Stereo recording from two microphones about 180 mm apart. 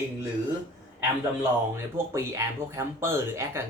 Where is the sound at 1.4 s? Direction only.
15° right (ahead or behind).